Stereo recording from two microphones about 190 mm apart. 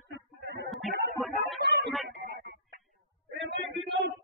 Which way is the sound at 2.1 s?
45° right (ahead or behind).